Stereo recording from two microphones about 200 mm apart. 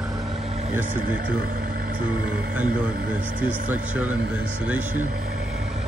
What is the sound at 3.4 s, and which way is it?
Speech, 10° right (ahead or behind).